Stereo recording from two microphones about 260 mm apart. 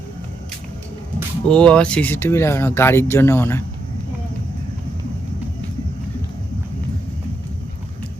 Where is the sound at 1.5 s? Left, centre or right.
Centre.